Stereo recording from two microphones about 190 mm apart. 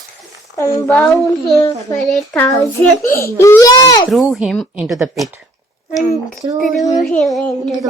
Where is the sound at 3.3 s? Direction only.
15° left (ahead or behind).